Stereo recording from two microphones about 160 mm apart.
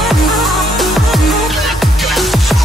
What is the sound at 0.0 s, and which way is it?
Music, centre (ahead or behind).